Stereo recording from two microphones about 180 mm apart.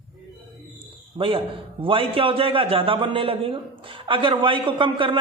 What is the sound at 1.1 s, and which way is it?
A man's voice, 30° right (ahead or behind).